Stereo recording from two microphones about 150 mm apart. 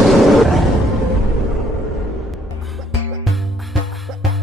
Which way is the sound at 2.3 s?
Centre (ahead or behind).